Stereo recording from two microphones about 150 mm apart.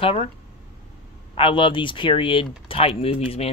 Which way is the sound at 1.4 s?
35° left (ahead or behind).